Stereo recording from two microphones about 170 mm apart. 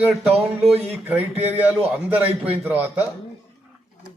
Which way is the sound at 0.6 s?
35° right (ahead or behind).